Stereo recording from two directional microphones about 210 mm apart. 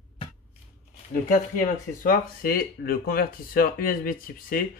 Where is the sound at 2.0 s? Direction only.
45° left (ahead or behind).